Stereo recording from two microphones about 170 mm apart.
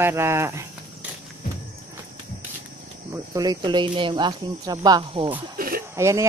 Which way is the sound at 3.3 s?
25° right (ahead or behind).